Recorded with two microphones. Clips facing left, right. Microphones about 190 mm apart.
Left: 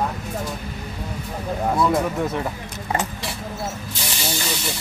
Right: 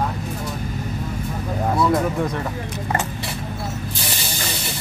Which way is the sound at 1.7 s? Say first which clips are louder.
Right 1 dB; centre (ahead or behind).